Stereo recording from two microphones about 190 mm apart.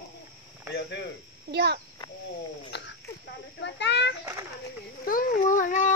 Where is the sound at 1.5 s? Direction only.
60° right (ahead or behind).